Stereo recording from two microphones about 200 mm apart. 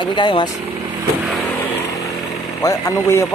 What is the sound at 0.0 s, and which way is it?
Speech, 25° left (ahead or behind).